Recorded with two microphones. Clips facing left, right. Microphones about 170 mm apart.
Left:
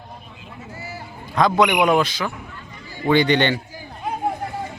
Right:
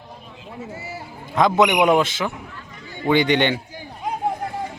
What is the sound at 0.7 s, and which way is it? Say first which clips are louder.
A man's voice: right 1 dB; 25° right (ahead or behind).